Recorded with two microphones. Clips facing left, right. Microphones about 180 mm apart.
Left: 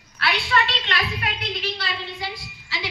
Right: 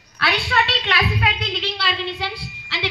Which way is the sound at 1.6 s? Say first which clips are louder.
Right 4 dB; 75° right (ahead or behind).